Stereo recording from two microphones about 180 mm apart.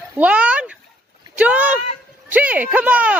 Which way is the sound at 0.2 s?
5° right (ahead or behind).